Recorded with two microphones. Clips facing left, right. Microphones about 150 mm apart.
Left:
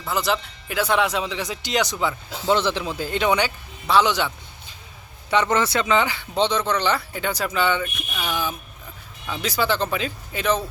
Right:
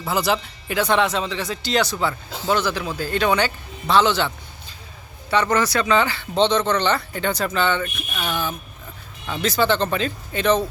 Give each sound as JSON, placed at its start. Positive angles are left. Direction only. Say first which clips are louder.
{"t": 0.1, "sound": "speech", "louder": "right 2 dB", "side_deg": 0}
{"t": 5.3, "sound": "speech", "louder": "right 1 dB", "side_deg": 20}